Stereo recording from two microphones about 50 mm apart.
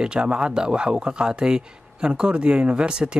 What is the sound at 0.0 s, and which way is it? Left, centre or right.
A man's voice, centre.